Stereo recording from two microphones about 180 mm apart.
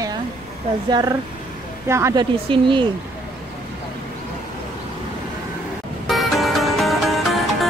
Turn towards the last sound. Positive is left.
turn(degrees=0)  # may be behind; listen again after turning